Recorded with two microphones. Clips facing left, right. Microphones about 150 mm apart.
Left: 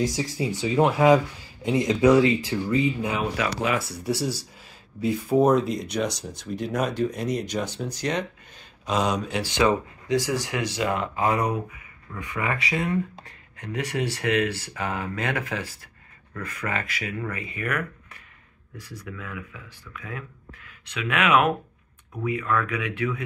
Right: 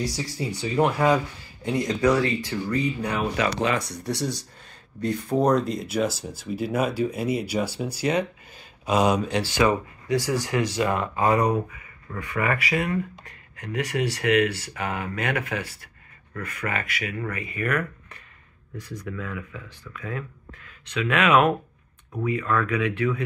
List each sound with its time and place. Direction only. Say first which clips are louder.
0.0 s speech: left 3 dB; 20° left (ahead or behind)
0.7 s speech: left 1 dB; 10° left (ahead or behind)
1.0 s speech: left 4 dB; 20° left (ahead or behind); by 9.3 s 10° right (ahead or behind)
9.4 s speech: even; 20° left (ahead or behind)
17.6 s speech: right 4 dB; 10° left (ahead or behind)
18.8 s speech: right 5 dB; 15° right (ahead or behind)
19.0 s speech: right 3 dB; 10° left (ahead or behind)